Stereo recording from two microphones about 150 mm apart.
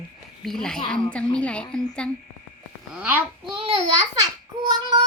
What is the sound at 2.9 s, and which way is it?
Speech, 10° right (ahead or behind).